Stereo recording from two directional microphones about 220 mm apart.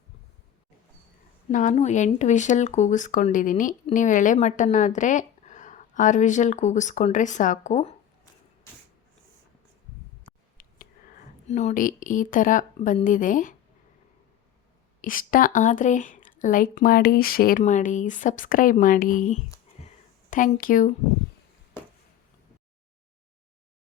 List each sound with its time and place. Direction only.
1.5 s speech: 35° left (ahead or behind)
10.6 s speech: 35° left (ahead or behind)
15.0 s speech: 40° left (ahead or behind)